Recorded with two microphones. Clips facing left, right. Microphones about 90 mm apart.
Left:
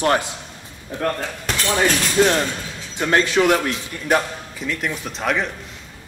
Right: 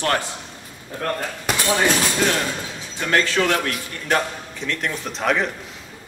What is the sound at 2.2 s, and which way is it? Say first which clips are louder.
A man's voice: left 4 dB; 25° left (ahead or behind).